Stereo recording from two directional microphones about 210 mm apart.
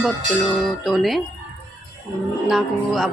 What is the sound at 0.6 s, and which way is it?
Speech, centre (ahead or behind).